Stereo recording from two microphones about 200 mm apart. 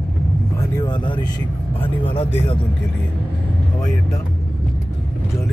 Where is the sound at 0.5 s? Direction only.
15° left (ahead or behind).